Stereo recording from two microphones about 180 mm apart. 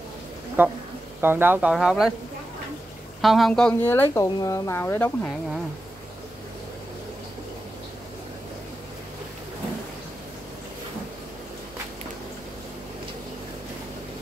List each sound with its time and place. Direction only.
0.6 s speech: 10° right (ahead or behind)
3.2 s speech: centre (ahead or behind)